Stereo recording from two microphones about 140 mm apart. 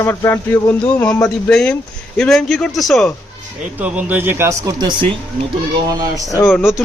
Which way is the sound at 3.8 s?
10° right (ahead or behind).